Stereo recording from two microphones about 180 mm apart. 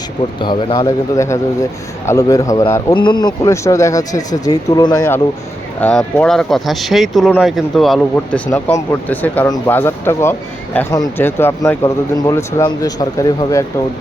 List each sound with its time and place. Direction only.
0.3 s speech: 25° left (ahead or behind)
5.8 s speech: 5° left (ahead or behind)